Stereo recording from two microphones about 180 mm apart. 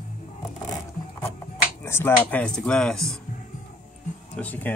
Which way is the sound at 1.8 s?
15° left (ahead or behind).